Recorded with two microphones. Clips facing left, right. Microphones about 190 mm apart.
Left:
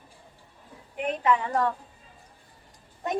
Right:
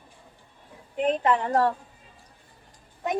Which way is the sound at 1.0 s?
35° right (ahead or behind).